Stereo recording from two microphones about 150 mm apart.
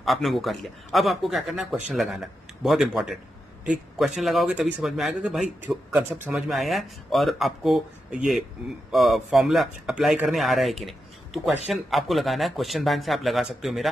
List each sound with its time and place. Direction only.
0.0 s speech: centre (ahead or behind)